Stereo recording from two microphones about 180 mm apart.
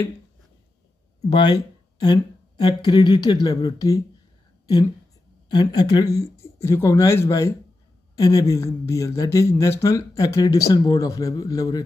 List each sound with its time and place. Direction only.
1.2 s speech: 25° left (ahead or behind)
5.6 s speech: 20° left (ahead or behind)